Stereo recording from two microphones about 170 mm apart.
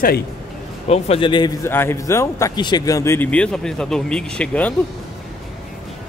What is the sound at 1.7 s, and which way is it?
Speech, 15° left (ahead or behind).